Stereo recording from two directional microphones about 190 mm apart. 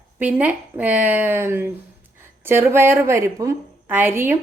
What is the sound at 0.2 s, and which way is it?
A woman's voice, 10° right (ahead or behind).